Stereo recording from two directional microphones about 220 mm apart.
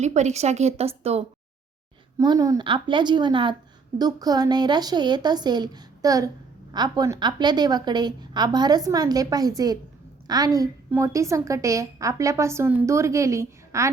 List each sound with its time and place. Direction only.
0.0 s speech: 30° right (ahead or behind)
2.1 s a woman's voice: 15° right (ahead or behind)